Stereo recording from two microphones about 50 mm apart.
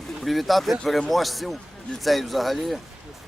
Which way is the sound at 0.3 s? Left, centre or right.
Centre.